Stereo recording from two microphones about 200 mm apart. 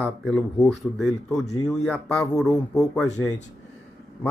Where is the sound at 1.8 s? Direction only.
5° left (ahead or behind).